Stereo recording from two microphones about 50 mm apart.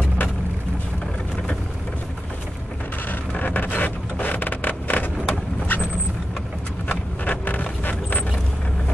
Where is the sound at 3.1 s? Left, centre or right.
Left.